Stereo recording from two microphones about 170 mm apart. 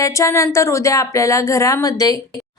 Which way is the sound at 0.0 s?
15° left (ahead or behind).